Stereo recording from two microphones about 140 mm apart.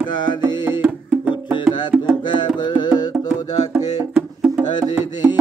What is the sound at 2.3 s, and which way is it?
Carnatic music, 35° left (ahead or behind).